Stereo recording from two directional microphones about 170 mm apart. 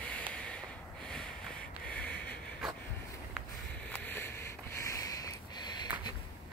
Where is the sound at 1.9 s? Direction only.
10° left (ahead or behind).